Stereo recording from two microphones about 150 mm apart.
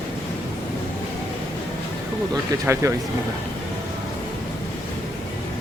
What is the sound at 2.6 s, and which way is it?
Speech, 20° right (ahead or behind).